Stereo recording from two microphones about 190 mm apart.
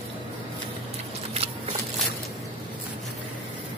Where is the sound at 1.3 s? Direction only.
35° right (ahead or behind).